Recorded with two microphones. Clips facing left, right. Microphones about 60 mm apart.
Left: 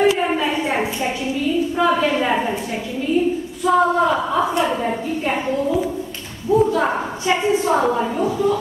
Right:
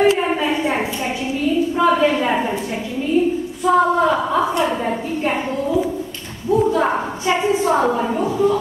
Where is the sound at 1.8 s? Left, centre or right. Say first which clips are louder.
Right 2 dB; centre.